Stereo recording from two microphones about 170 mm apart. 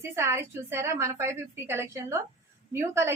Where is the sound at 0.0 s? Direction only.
15° right (ahead or behind).